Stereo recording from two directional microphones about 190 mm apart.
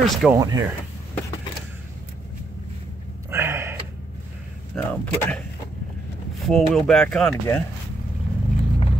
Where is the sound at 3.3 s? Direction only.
15° right (ahead or behind).